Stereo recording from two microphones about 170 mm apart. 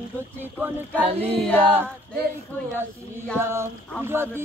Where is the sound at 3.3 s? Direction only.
15° right (ahead or behind).